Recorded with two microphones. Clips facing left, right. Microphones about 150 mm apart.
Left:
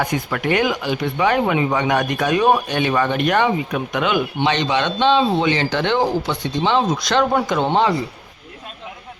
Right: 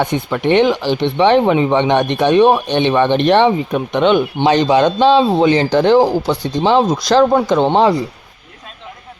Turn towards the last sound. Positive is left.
turn(degrees=-35)  # may be behind; listen again after turning